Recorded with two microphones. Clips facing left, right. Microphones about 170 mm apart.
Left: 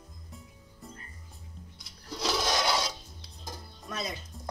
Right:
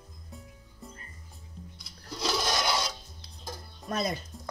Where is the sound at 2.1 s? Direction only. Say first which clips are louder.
Left 1 dB; centre (ahead or behind).